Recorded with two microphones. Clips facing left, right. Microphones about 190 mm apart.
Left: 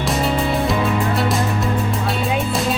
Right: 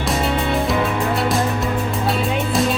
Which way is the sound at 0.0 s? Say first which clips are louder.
Left 1 dB; centre (ahead or behind).